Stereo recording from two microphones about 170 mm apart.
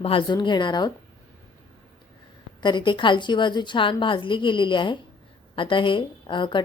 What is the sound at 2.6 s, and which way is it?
Speech, 25° left (ahead or behind).